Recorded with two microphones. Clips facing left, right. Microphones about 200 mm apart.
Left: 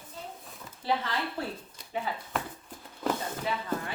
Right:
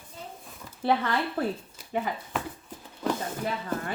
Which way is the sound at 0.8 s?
60° right (ahead or behind).